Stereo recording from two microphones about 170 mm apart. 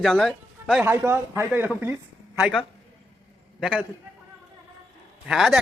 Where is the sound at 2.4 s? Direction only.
Centre (ahead or behind).